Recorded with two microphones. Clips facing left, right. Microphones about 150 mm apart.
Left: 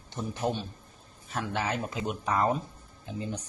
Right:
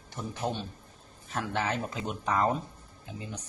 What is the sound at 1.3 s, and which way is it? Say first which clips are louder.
Speech: even; centre (ahead or behind).